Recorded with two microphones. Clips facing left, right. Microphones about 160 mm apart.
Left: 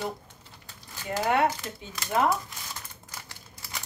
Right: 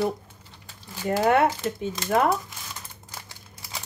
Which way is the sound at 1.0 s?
55° right (ahead or behind).